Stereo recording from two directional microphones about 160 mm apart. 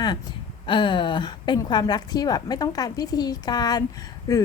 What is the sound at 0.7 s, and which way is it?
A woman's voice, 30° left (ahead or behind).